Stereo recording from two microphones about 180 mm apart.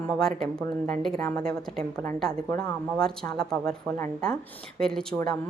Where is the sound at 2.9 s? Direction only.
5° left (ahead or behind).